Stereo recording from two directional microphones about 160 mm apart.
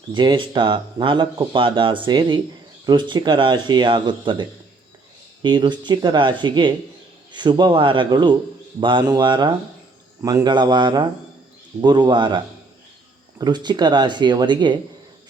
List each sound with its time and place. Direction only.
0.1 s speech: 30° right (ahead or behind)
13.4 s speech: 25° right (ahead or behind)